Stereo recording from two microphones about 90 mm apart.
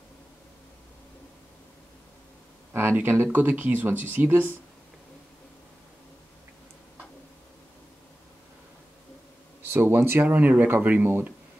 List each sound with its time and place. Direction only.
2.7 s speech: 25° right (ahead or behind)
9.6 s speech: 25° right (ahead or behind)